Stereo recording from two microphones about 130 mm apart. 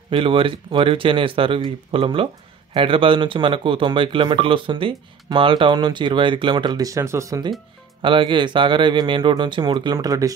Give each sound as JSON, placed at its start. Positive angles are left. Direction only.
{"t": 0.1, "sound": "speech", "side_deg": -40}
{"t": 8.0, "sound": "speech", "side_deg": -40}